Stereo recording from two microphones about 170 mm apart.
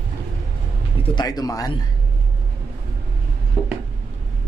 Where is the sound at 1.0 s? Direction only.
25° left (ahead or behind).